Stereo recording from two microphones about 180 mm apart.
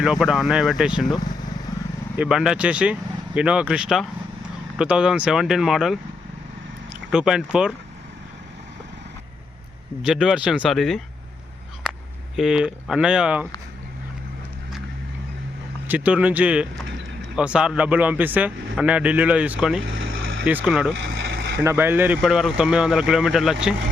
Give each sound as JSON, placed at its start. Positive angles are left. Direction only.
{"t": 0.0, "sound": "speech", "side_deg": -5}
{"t": 2.1, "sound": "speech", "side_deg": -5}
{"t": 10.0, "sound": "speech", "side_deg": -5}
{"t": 12.4, "sound": "speech", "side_deg": -5}
{"t": 15.9, "sound": "a man's voice", "side_deg": -10}
{"t": 19.9, "sound": "vehicle", "side_deg": -90}
{"t": 20.4, "sound": "speech", "side_deg": -10}
{"t": 21.0, "sound": "a sound", "side_deg": -90}
{"t": 21.6, "sound": "speech", "side_deg": -15}